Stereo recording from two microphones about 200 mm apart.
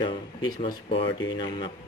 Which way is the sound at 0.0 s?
25° left (ahead or behind).